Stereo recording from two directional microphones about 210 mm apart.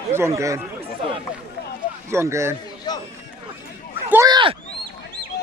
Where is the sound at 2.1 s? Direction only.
15° right (ahead or behind).